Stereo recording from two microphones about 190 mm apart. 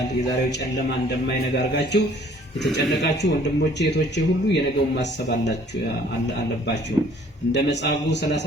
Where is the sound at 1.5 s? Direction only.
65° left (ahead or behind).